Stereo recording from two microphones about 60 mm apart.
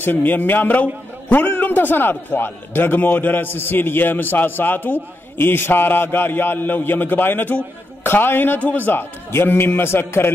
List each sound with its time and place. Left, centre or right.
0.0 s a man's voice: left